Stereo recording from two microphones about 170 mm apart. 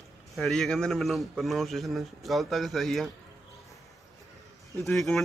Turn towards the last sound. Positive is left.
turn(degrees=0)  # may be behind; listen again after turning